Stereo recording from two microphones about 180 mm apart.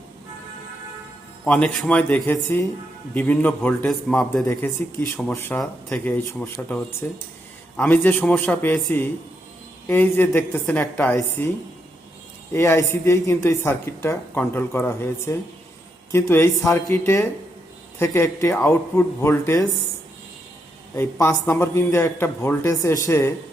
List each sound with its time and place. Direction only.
1.5 s speech: 5° left (ahead or behind)
4.4 s speech: 15° left (ahead or behind)
12.5 s speech: 15° left (ahead or behind)
20.9 s speech: 15° left (ahead or behind)